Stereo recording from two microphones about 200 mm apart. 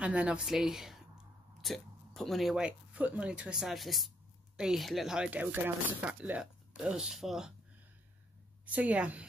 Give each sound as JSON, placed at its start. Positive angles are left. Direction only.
{"t": 0.0, "sound": "speech", "side_deg": -5}
{"t": 8.6, "sound": "a woman's voice", "side_deg": -5}